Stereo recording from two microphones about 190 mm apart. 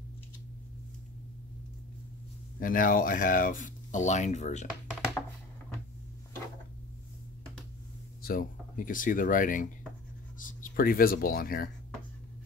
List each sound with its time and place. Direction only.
2.6 s speech: 50° left (ahead or behind)
8.2 s speech: 50° left (ahead or behind)